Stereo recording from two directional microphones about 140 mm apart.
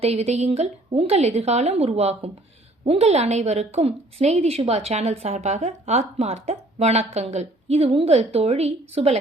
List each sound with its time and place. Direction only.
0.0 s a woman's voice: 45° right (ahead or behind)